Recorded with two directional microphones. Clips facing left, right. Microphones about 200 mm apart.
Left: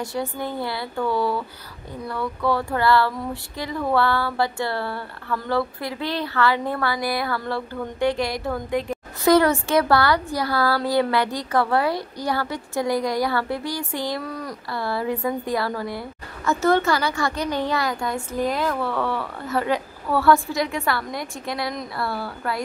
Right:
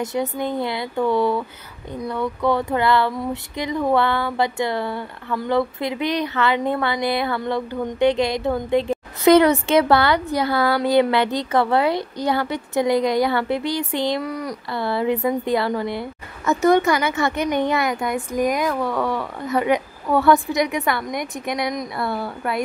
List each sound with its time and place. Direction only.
0.0 s speech: 20° right (ahead or behind)